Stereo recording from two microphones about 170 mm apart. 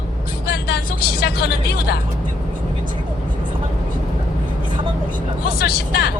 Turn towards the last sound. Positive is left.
turn(degrees=70)  # may be behind; listen again after turning